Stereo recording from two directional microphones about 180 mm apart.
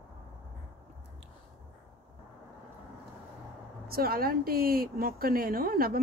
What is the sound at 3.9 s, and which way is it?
Speech, 55° right (ahead or behind).